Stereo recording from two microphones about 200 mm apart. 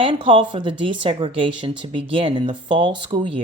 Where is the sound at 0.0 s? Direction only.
25° right (ahead or behind).